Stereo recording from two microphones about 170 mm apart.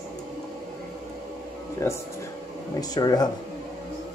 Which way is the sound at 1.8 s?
15° left (ahead or behind).